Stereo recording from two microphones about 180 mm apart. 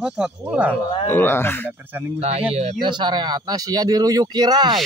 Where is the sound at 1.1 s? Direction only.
10° left (ahead or behind).